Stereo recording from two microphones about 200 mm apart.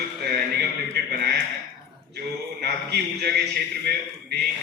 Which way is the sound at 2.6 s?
55° right (ahead or behind).